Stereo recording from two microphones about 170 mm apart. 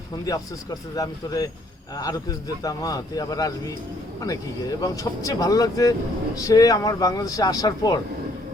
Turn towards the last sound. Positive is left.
turn(degrees=25)  # may be behind; listen again after turning